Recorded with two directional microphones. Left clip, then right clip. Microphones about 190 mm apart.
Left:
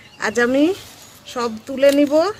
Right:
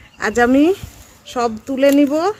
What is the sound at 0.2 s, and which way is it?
Speech, 55° right (ahead or behind).